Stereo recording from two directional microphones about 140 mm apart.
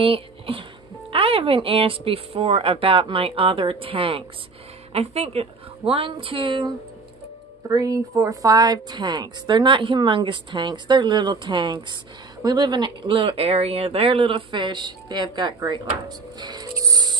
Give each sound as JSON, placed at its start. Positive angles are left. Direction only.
{"t": 0.0, "sound": "speech", "side_deg": -40}
{"t": 7.6, "sound": "speech", "side_deg": -25}
{"t": 16.8, "sound": "music", "side_deg": -25}